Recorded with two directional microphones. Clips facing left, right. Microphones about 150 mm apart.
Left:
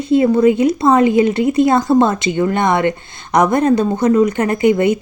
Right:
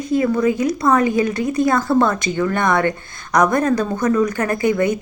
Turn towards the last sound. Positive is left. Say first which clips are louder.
# left 4 dB
turn(degrees=20)  # may be behind; listen again after turning